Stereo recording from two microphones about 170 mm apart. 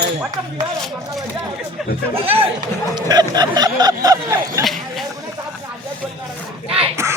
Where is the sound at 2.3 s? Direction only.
30° right (ahead or behind).